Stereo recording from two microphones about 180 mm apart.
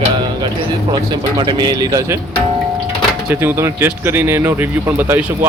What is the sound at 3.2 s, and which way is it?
Speech, 15° right (ahead or behind).